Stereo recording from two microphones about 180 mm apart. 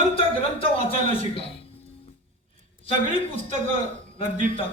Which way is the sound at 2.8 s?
30° left (ahead or behind).